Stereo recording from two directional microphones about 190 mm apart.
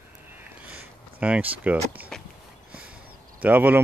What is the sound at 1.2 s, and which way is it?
Speech, 5° right (ahead or behind).